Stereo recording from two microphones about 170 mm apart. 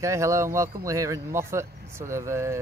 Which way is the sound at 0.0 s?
15° right (ahead or behind).